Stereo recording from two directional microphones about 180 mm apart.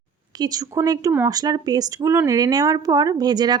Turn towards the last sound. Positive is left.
turn(degrees=-20)  # may be behind; listen again after turning